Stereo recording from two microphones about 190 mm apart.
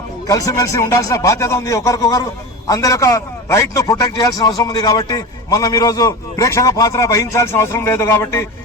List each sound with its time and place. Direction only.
0.3 s a man's voice: 20° left (ahead or behind)